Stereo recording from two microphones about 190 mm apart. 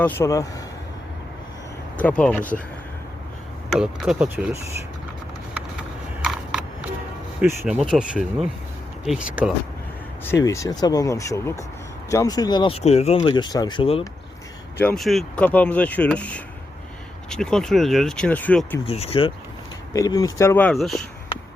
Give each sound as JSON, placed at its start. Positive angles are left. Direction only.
{"t": 0.0, "sound": "speech", "side_deg": 15}
{"t": 2.0, "sound": "speech", "side_deg": 5}
{"t": 3.7, "sound": "speech", "side_deg": -5}
{"t": 6.2, "sound": "a sound", "side_deg": -5}
{"t": 7.4, "sound": "speech", "side_deg": -5}
{"t": 10.2, "sound": "speech", "side_deg": 15}
{"t": 14.8, "sound": "speech", "side_deg": 5}
{"t": 18.9, "sound": "speech", "side_deg": 30}
{"t": 19.9, "sound": "speech", "side_deg": 20}